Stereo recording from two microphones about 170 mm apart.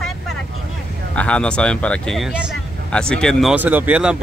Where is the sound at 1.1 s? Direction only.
5° left (ahead or behind).